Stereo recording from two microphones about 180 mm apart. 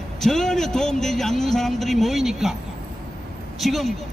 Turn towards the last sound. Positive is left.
turn(degrees=0)  # may be behind; listen again after turning